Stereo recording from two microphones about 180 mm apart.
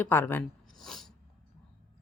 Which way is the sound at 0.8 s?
Centre (ahead or behind).